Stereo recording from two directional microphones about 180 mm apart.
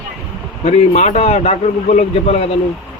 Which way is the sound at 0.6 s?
40° left (ahead or behind).